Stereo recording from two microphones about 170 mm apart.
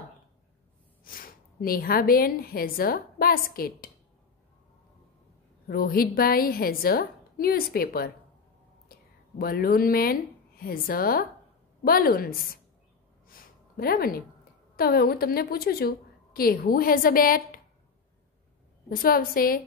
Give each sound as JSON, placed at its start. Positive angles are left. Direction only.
{"t": 1.0, "sound": "a woman's voice", "side_deg": 55}
{"t": 5.7, "sound": "a woman's voice", "side_deg": 60}
{"t": 9.4, "sound": "a woman's voice", "side_deg": 60}
{"t": 13.3, "sound": "a sound", "side_deg": 60}
{"t": 14.8, "sound": "a woman's voice", "side_deg": 65}
{"t": 18.9, "sound": "a woman's voice", "side_deg": 60}